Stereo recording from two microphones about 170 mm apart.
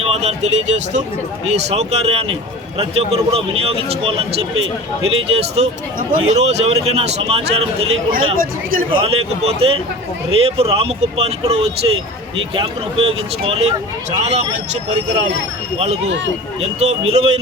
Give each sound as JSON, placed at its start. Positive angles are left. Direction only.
{"t": 0.1, "sound": "a man's voice", "side_deg": -40}
{"t": 6.0, "sound": "speech", "side_deg": -55}
{"t": 6.4, "sound": "a man's voice", "side_deg": -40}
{"t": 16.6, "sound": "a man's voice", "side_deg": -40}